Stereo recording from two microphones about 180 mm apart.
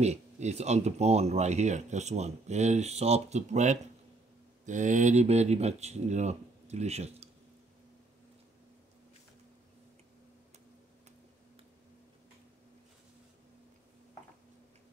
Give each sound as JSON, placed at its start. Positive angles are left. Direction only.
{"t": 0.0, "sound": "speech", "side_deg": -40}